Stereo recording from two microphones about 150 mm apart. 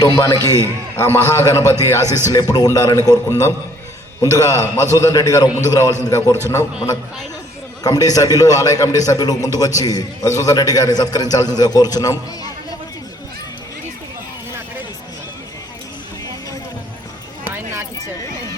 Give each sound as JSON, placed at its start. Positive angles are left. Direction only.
{"t": 0.0, "sound": "a man's voice", "side_deg": 25}
{"t": 6.2, "sound": "a man's voice", "side_deg": -15}
{"t": 7.9, "sound": "a man's voice", "side_deg": 25}